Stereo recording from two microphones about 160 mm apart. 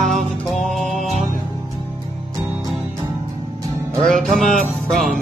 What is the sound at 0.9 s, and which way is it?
Music, 45° right (ahead or behind).